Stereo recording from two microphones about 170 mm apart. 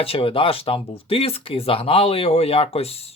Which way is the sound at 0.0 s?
35° left (ahead or behind).